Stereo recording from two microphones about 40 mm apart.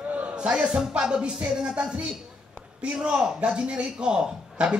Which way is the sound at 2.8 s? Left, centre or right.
Right.